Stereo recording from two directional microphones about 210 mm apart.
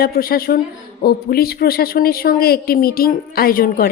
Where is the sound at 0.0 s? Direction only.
45° left (ahead or behind).